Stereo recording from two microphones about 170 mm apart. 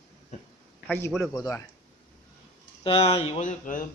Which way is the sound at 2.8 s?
35° left (ahead or behind).